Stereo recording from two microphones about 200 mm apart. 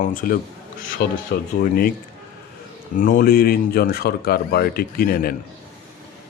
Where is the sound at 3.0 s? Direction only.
45° left (ahead or behind).